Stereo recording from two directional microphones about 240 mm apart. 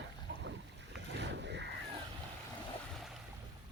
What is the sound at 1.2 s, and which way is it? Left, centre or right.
Boat, right.